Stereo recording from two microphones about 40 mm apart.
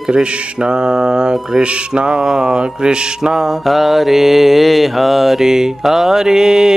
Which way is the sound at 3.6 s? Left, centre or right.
Centre.